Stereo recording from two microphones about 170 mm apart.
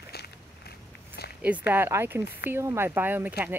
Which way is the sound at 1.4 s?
10° right (ahead or behind).